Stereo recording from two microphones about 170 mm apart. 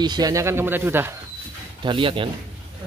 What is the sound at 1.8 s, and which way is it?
Speech, 30° right (ahead or behind).